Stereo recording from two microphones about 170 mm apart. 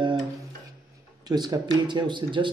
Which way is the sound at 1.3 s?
25° right (ahead or behind).